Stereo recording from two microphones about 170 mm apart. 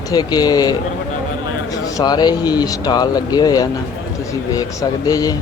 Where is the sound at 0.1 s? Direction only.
25° left (ahead or behind).